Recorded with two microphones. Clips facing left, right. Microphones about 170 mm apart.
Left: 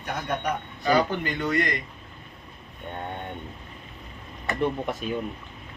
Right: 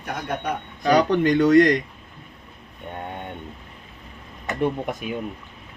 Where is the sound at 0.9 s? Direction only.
85° right.